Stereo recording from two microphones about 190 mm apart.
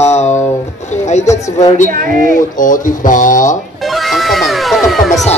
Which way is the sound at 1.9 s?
45° right (ahead or behind).